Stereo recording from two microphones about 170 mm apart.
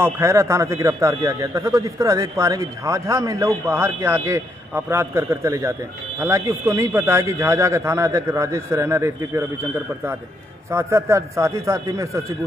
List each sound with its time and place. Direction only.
0.0 s speech: 15° right (ahead or behind)
10.7 s speech: 15° right (ahead or behind)